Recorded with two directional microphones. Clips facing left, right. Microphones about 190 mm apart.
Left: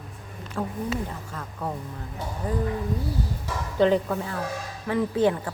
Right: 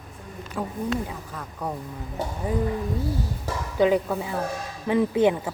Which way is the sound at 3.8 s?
10° right (ahead or behind).